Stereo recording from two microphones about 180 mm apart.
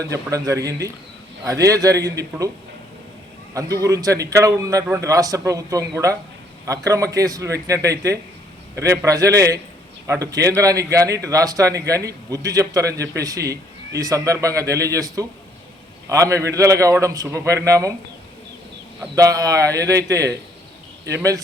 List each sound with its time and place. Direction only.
0.0 s a man's voice: 20° right (ahead or behind)
3.5 s a man's voice: 20° right (ahead or behind)
19.1 s a man's voice: 20° right (ahead or behind)